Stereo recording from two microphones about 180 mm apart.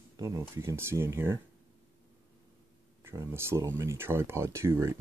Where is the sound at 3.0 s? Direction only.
15° right (ahead or behind).